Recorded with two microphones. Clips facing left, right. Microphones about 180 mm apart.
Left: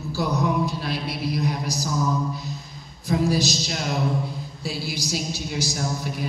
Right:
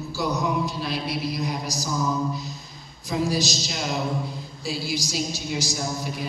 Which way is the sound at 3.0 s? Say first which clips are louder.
Left 3 dB; 55° left (ahead or behind).